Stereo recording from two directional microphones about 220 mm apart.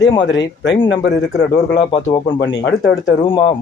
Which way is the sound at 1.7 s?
20° left (ahead or behind).